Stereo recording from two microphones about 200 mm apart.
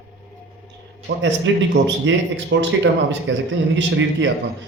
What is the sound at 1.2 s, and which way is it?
Speech, 65° right (ahead or behind).